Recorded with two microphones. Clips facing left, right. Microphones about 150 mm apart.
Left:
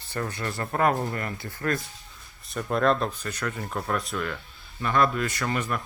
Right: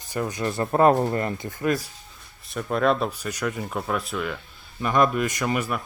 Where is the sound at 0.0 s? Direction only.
15° right (ahead or behind).